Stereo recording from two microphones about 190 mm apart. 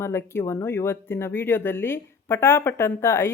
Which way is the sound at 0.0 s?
15° left (ahead or behind).